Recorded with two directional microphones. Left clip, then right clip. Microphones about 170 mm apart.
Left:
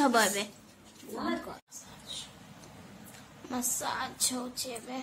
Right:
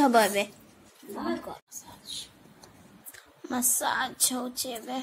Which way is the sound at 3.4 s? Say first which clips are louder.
Right 6 dB; 35° right (ahead or behind).